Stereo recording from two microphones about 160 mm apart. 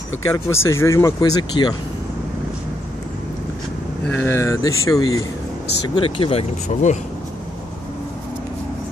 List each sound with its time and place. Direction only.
0.3 s speech: 15° left (ahead or behind)
4.1 s speech: 15° left (ahead or behind)
5.9 s speech: 30° left (ahead or behind)